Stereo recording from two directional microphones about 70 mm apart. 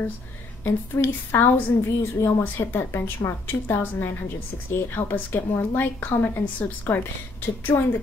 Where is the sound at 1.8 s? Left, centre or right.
Left.